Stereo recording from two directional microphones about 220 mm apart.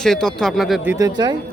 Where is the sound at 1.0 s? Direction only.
20° right (ahead or behind).